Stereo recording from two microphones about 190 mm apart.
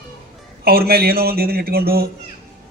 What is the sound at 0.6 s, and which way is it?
Speech, 55° right (ahead or behind).